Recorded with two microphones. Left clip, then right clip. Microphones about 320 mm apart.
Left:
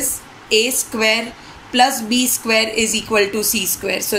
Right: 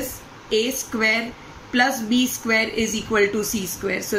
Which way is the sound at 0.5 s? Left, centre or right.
Centre.